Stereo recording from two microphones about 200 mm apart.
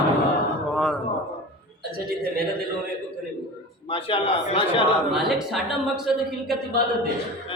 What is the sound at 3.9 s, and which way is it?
Speech, 25° left (ahead or behind).